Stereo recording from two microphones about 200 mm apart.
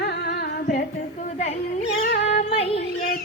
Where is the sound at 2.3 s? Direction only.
30° left (ahead or behind).